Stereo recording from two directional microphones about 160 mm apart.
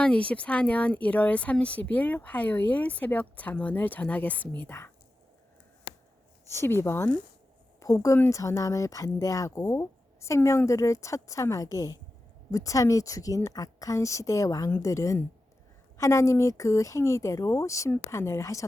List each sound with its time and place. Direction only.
0.0 s speech: 5° left (ahead or behind)
6.5 s speech: 15° left (ahead or behind)